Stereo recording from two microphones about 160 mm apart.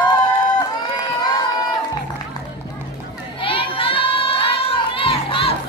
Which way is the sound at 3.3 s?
30° left (ahead or behind).